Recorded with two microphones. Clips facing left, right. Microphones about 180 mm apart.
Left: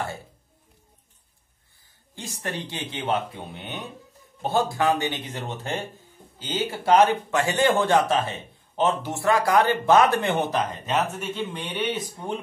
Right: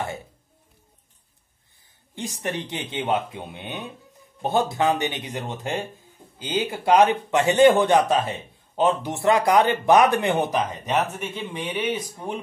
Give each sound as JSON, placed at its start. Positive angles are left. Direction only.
{"t": 2.1, "sound": "a man's voice", "side_deg": -20}